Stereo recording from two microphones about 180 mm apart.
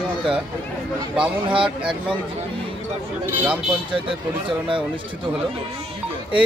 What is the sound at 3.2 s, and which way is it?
Speech, 10° right (ahead or behind).